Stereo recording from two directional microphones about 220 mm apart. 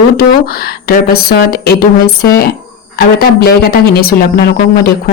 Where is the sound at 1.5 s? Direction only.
40° left (ahead or behind).